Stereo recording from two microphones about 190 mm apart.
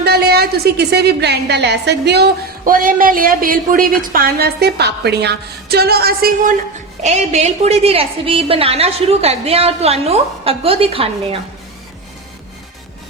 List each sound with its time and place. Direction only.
0.0 s a woman's voice: 55° right (ahead or behind)
7.0 s a woman's voice: 35° right (ahead or behind)